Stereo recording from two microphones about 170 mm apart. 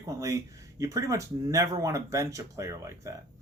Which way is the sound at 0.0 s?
20° right (ahead or behind).